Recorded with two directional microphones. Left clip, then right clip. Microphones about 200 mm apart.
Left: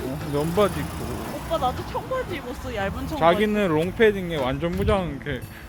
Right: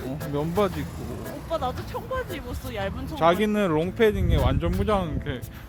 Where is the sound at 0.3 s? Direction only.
25° right (ahead or behind).